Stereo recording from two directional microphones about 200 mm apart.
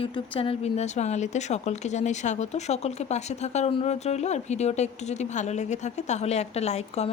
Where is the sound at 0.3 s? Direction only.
30° left (ahead or behind).